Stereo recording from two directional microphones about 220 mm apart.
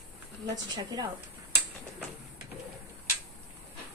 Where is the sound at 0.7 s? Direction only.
15° right (ahead or behind).